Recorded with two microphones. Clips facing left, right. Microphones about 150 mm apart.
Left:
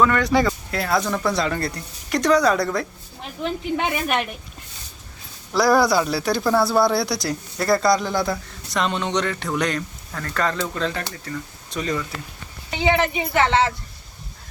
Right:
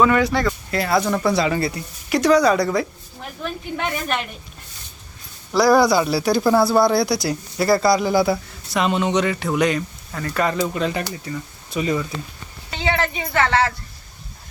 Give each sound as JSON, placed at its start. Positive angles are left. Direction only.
{"t": 0.0, "sound": "speech", "side_deg": 0}
{"t": 3.2, "sound": "speech", "side_deg": 20}
{"t": 5.5, "sound": "speech", "side_deg": 0}
{"t": 12.7, "sound": "speech", "side_deg": 15}